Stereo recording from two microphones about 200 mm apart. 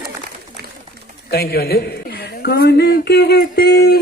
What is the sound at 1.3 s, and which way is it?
A man's voice, 50° left (ahead or behind).